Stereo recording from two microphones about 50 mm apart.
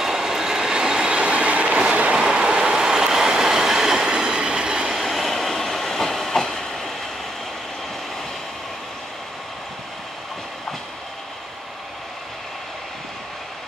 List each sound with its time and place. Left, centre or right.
0.0 s train: centre
4.9 s train: centre